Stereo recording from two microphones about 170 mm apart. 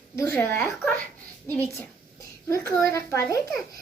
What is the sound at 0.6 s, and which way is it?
Speech, centre (ahead or behind).